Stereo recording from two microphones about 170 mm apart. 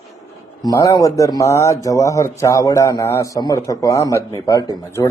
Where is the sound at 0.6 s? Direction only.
20° left (ahead or behind).